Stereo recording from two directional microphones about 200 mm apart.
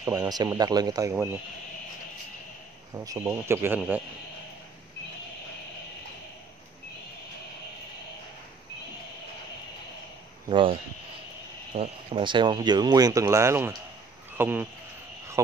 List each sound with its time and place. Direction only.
0.1 s speech: 20° right (ahead or behind)
2.9 s speech: 15° right (ahead or behind)
10.5 s speech: 25° right (ahead or behind)